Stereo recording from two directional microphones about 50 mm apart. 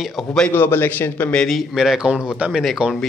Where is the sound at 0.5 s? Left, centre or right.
Left.